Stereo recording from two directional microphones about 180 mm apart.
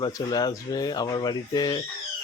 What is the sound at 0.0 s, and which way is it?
Speech, 20° left (ahead or behind).